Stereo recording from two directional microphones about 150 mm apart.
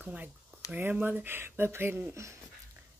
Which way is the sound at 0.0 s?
10° right (ahead or behind).